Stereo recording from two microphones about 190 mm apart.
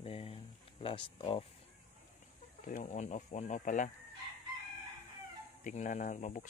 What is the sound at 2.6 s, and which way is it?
Speech, 40° left (ahead or behind).